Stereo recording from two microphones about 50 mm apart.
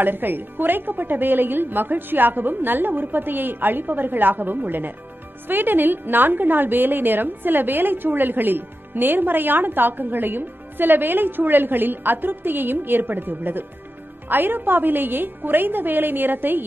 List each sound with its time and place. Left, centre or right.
0.0 s a woman's voice: right